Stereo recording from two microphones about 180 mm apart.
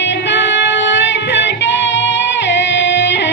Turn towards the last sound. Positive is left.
turn(degrees=80)